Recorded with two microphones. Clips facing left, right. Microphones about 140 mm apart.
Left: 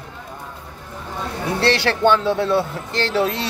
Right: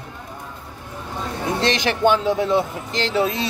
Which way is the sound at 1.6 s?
15° right (ahead or behind).